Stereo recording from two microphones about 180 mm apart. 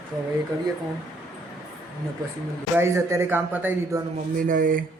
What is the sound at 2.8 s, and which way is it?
Speech, 15° right (ahead or behind).